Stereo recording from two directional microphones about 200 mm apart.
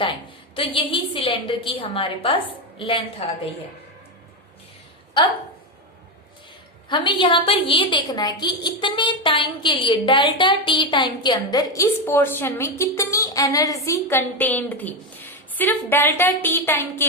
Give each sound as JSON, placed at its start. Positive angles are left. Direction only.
{"t": 0.5, "sound": "a woman's voice", "side_deg": 25}
{"t": 6.8, "sound": "a woman's voice", "side_deg": 25}